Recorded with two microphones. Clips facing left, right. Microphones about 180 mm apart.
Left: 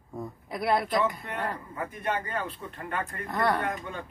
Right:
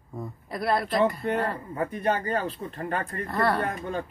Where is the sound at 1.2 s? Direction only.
35° right (ahead or behind).